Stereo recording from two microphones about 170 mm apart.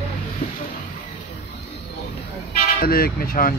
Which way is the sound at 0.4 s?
55° left (ahead or behind).